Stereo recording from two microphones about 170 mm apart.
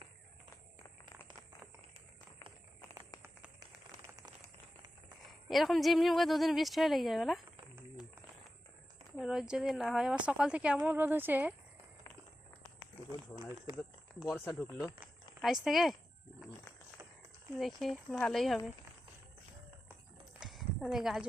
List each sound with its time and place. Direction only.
5.5 s speech: centre (ahead or behind)
9.1 s speech: 5° right (ahead or behind)
13.3 s speech: 25° right (ahead or behind)
14.3 s speech: 15° left (ahead or behind)
15.4 s speech: centre (ahead or behind)
17.6 s speech: centre (ahead or behind)
20.4 s a sound: centre (ahead or behind)